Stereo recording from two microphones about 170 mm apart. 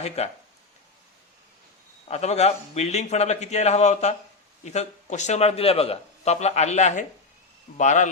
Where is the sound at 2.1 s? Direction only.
40° left (ahead or behind).